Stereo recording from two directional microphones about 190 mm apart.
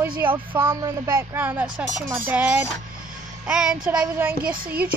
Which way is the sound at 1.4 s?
10° right (ahead or behind).